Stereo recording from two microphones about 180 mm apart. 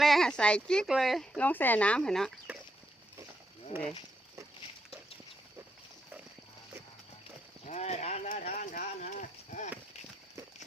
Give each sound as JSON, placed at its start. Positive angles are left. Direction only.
{"t": 0.0, "sound": "speech", "side_deg": 0}
{"t": 7.6, "sound": "speech", "side_deg": 40}